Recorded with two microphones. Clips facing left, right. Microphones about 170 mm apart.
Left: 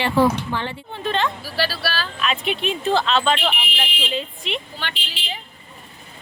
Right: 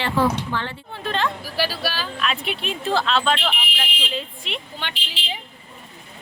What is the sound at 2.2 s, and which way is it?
Speech, centre (ahead or behind).